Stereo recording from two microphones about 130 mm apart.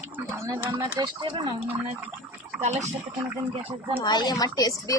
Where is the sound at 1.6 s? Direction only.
10° right (ahead or behind).